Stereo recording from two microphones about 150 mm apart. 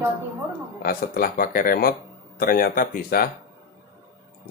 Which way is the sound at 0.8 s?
80° left.